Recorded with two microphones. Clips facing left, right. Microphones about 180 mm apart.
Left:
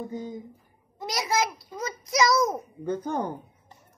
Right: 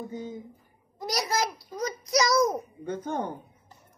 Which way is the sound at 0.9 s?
20° left (ahead or behind).